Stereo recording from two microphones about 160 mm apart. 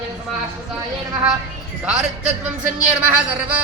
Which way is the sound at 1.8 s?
5° right (ahead or behind).